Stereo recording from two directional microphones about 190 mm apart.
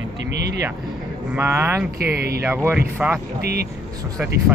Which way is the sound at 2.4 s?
10° right (ahead or behind).